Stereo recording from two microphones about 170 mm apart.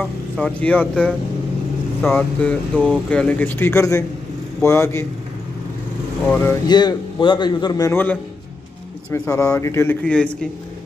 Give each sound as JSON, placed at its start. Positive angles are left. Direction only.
{"t": 0.4, "sound": "speech", "side_deg": 10}
{"t": 6.2, "sound": "speech", "side_deg": 15}
{"t": 6.7, "sound": "a man's voice", "side_deg": 25}
{"t": 9.1, "sound": "speech", "side_deg": 15}